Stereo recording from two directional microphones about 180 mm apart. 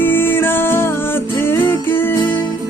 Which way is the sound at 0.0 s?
10° left (ahead or behind).